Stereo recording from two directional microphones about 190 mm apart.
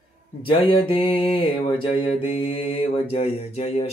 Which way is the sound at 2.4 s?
30° left (ahead or behind).